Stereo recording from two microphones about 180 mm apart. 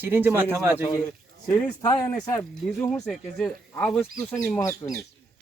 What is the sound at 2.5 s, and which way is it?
Speech, 5° left (ahead or behind).